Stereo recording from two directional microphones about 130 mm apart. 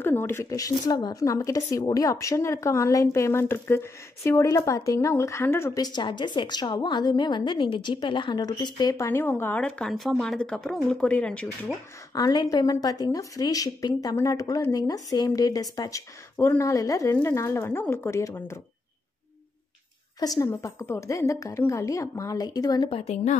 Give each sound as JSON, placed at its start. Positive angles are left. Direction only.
{"t": 0.0, "sound": "a woman's voice", "side_deg": 15}
{"t": 5.8, "sound": "a woman's voice", "side_deg": 35}
{"t": 8.9, "sound": "speech", "side_deg": 20}
{"t": 12.1, "sound": "a woman's voice", "side_deg": 30}
{"t": 20.2, "sound": "a woman's voice", "side_deg": 30}
{"t": 22.8, "sound": "speech", "side_deg": 50}